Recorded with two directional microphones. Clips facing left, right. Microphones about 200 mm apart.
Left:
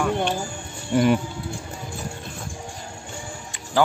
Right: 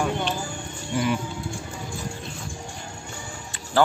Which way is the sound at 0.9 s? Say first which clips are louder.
Left 6 dB; 50° left (ahead or behind).